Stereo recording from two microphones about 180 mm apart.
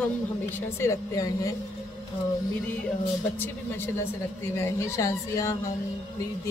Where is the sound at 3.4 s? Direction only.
10° left (ahead or behind).